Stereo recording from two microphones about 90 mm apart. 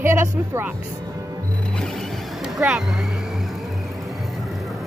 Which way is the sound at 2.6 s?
20° right (ahead or behind).